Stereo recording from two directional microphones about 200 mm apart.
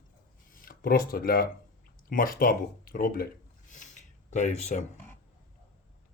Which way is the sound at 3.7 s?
35° left (ahead or behind).